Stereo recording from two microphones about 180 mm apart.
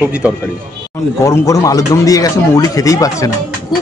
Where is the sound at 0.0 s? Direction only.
5° right (ahead or behind).